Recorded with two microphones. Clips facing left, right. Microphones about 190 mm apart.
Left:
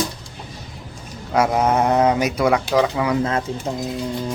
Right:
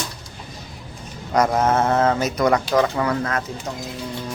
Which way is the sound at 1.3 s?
5° left (ahead or behind).